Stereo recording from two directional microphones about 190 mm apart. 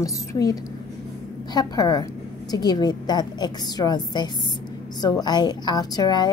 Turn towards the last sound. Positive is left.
turn(degrees=20)  # may be behind; listen again after turning